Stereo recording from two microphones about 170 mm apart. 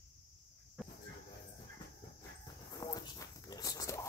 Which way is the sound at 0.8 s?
Centre (ahead or behind).